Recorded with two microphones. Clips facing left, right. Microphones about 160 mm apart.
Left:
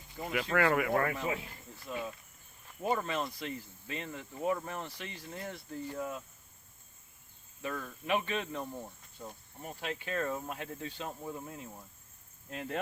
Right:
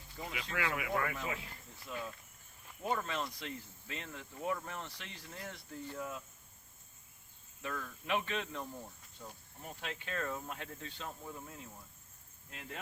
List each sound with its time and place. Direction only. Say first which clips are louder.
0.3 s speech: left 10 dB; 55° left (ahead or behind)
1.1 s speech: left 5 dB; 30° left (ahead or behind)
1.9 s speech: left 4 dB; 5° left (ahead or behind)
7.6 s speech: left 4 dB; 10° left (ahead or behind)
8.7 s cricket: left 4 dB; 20° left (ahead or behind)
9.6 s speech: left 5 dB; 5° left (ahead or behind)
12.5 s speech: left 10 dB; 55° left (ahead or behind)